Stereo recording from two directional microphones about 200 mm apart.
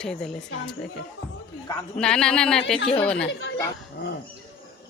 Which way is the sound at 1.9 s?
5° left (ahead or behind).